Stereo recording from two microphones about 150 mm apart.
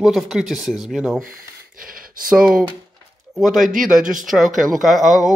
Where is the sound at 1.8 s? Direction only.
70° right (ahead or behind).